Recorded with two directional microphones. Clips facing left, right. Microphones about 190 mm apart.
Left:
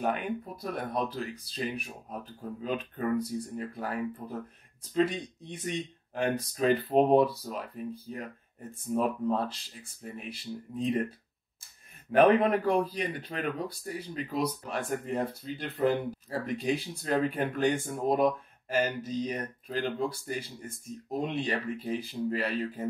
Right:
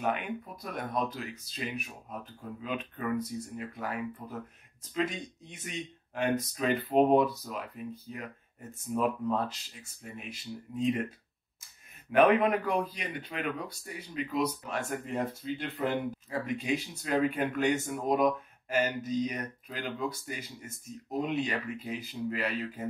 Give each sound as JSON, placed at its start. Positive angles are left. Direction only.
{"t": 0.0, "sound": "speech", "side_deg": 35}